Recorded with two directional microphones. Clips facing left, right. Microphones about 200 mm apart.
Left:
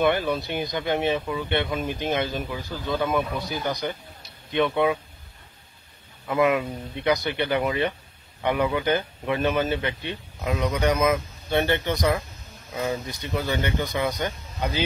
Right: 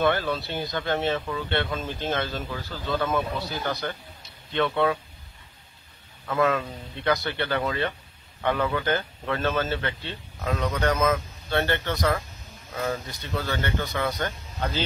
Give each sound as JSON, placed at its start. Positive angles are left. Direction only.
{"t": 0.0, "sound": "speech", "side_deg": 15}
{"t": 6.2, "sound": "speech", "side_deg": 15}